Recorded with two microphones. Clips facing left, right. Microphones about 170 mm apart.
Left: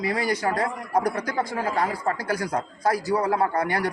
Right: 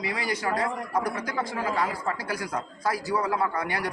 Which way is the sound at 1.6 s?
40° left (ahead or behind).